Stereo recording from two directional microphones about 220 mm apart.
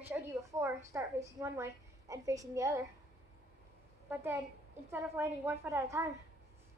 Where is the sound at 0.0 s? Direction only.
10° right (ahead or behind).